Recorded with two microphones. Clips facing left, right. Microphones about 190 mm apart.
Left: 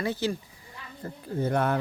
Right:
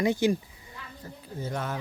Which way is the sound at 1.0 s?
60° left (ahead or behind).